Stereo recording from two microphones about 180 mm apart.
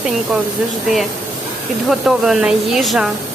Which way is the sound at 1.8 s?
5° right (ahead or behind).